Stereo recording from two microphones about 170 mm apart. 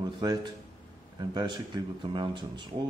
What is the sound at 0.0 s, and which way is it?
Speech, 25° right (ahead or behind).